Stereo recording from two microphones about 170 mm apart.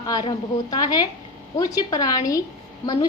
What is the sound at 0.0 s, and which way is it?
A woman's voice, 25° left (ahead or behind).